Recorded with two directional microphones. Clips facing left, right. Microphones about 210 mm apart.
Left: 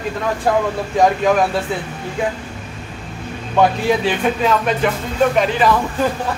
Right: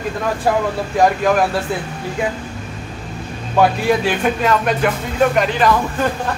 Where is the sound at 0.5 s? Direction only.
5° right (ahead or behind).